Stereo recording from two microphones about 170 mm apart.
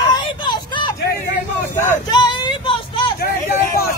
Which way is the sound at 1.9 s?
25° left (ahead or behind).